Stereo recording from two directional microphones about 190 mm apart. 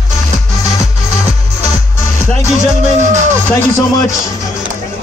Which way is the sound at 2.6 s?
35° right (ahead or behind).